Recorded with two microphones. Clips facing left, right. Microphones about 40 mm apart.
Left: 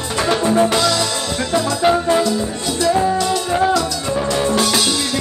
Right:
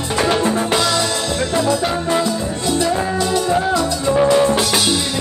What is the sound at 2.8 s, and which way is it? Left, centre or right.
Music, centre.